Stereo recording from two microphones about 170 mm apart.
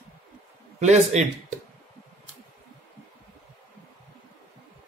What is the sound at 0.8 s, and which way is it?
Speech, 40° right (ahead or behind).